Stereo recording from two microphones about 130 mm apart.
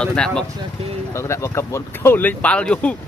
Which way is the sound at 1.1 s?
20° left (ahead or behind).